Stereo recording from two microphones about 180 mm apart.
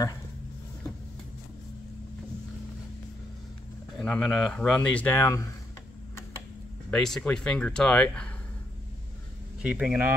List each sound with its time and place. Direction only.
4.0 s speech: 5° left (ahead or behind)
6.9 s speech: 5° left (ahead or behind)
9.6 s speech: 5° right (ahead or behind)